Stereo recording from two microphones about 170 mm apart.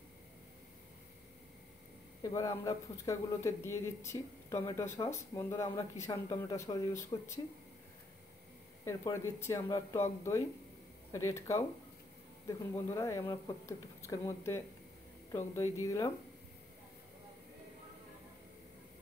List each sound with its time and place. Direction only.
2.2 s speech: 20° left (ahead or behind)
8.8 s speech: 15° left (ahead or behind)
11.1 s speech: 15° left (ahead or behind)